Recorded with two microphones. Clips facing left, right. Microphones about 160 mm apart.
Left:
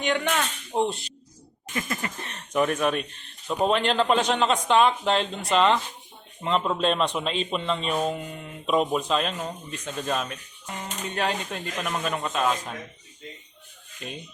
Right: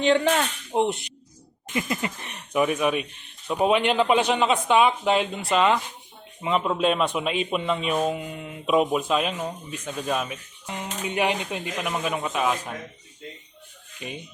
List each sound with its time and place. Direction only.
0.0 s speech: 30° right (ahead or behind)
0.8 s a man's voice: 20° right (ahead or behind)
14.0 s a man's voice: 10° right (ahead or behind)